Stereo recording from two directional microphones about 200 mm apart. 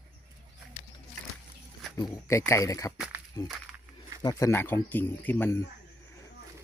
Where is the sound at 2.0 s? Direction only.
15° left (ahead or behind).